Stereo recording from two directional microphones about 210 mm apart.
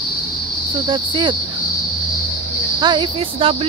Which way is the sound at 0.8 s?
25° right (ahead or behind).